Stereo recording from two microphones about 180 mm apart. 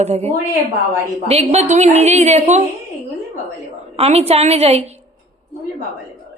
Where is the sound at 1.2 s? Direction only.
35° right (ahead or behind).